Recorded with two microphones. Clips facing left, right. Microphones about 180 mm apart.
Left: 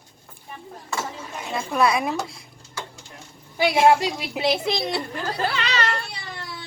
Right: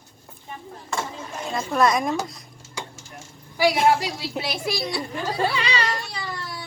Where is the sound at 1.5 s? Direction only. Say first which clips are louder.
Right 1 dB; 5° left (ahead or behind).